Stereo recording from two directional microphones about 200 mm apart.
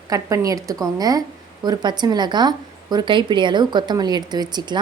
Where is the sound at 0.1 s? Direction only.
15° right (ahead or behind).